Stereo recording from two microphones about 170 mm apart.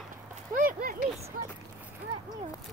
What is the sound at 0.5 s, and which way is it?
Speech, 55° right (ahead or behind).